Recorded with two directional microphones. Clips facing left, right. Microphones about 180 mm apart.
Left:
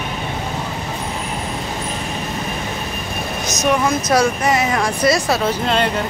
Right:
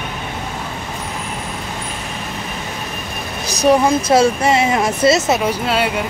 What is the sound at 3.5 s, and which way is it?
Speech, 35° right (ahead or behind).